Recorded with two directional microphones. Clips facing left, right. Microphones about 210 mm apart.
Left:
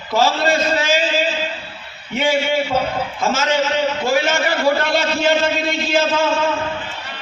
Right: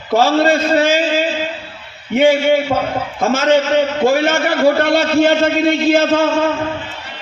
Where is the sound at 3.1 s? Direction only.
55° right (ahead or behind).